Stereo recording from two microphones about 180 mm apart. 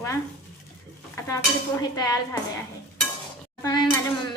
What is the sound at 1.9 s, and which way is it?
Speech, 20° left (ahead or behind).